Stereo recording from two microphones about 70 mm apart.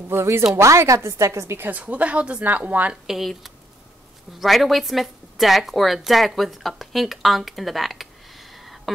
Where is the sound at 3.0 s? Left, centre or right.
Centre.